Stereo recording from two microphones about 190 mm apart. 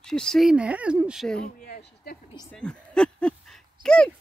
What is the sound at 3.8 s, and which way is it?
Speech, 5° left (ahead or behind).